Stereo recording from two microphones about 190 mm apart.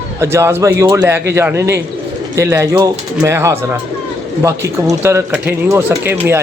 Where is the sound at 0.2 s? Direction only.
15° right (ahead or behind).